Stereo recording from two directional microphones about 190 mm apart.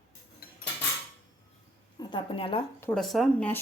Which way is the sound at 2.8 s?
5° left (ahead or behind).